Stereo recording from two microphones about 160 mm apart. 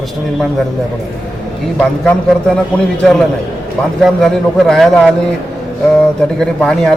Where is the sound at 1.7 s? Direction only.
5° left (ahead or behind).